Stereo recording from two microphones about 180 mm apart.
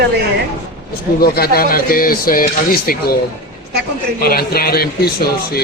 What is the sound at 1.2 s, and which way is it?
A man's voice, 55° left (ahead or behind).